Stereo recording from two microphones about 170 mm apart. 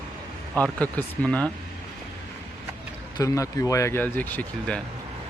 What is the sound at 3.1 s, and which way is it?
Speech, 20° left (ahead or behind).